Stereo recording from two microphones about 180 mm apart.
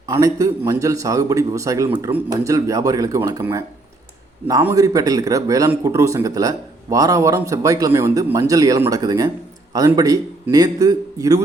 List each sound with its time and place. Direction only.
0.1 s speech: 20° right (ahead or behind)
4.7 s speech: 20° right (ahead or behind)